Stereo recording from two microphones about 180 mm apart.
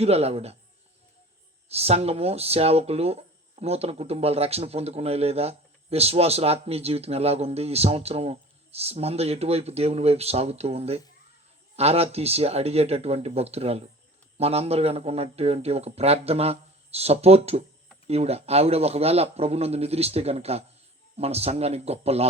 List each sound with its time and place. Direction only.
0.0 s speech: 35° right (ahead or behind)
1.7 s speech: 35° right (ahead or behind)